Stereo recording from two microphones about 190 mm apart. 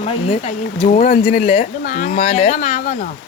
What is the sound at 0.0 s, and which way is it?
Speech, 35° left (ahead or behind).